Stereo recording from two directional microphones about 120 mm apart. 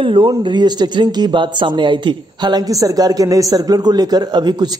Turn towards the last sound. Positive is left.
turn(degrees=-35)  # may be behind; listen again after turning